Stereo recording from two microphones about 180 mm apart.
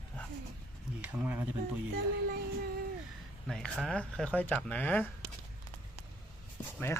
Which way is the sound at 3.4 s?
Centre (ahead or behind).